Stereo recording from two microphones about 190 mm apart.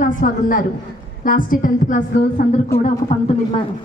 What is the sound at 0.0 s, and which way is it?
A woman's voice, 45° left (ahead or behind).